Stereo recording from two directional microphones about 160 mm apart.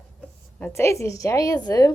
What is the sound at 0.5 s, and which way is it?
Speech, 15° left (ahead or behind).